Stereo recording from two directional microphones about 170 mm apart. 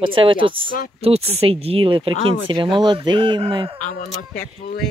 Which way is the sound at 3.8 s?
55° left (ahead or behind).